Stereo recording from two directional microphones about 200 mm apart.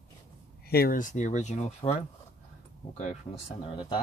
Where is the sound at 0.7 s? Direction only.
50° left (ahead or behind).